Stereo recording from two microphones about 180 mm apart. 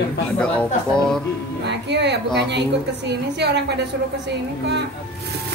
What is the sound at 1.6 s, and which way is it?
A woman's voice, 70° right (ahead or behind).